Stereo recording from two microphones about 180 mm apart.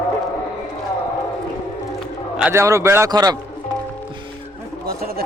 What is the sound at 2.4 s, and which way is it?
A man's voice, 10° right (ahead or behind).